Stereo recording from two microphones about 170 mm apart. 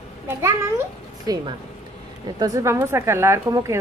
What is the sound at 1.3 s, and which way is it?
A woman's voice, 20° right (ahead or behind).